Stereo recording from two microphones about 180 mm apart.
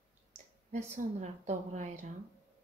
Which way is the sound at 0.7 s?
40° right (ahead or behind).